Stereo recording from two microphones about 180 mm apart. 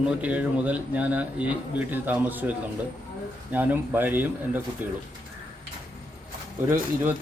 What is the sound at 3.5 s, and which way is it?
Speech, 10° right (ahead or behind).